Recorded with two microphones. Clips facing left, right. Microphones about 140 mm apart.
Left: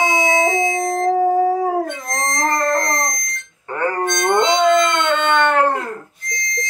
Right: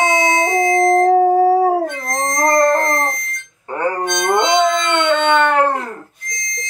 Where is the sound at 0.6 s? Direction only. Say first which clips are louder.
Right 6 dB; 55° right (ahead or behind).